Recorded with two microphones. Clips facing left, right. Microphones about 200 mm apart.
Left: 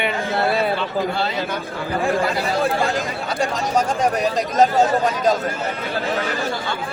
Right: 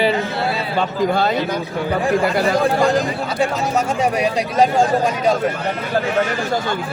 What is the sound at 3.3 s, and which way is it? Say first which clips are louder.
Speech: right 1 dB; 5° right (ahead or behind).